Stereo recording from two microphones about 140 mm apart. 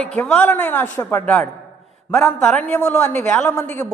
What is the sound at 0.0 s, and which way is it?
A man's voice, 5° left (ahead or behind).